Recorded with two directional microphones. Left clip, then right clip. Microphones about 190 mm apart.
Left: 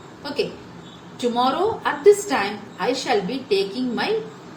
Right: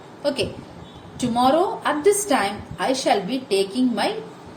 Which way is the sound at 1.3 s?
60° right (ahead or behind).